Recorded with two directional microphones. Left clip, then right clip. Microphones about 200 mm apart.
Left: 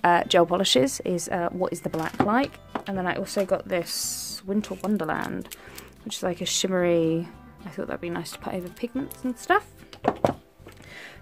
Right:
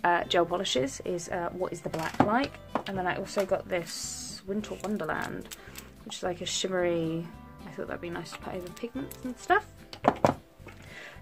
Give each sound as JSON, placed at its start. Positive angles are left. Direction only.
{"t": 0.0, "sound": "speech", "side_deg": 40}